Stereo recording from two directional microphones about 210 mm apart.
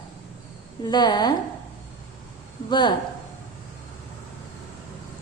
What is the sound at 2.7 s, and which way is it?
Speech, 20° left (ahead or behind).